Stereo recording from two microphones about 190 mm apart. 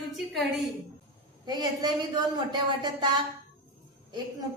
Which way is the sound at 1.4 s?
20° right (ahead or behind).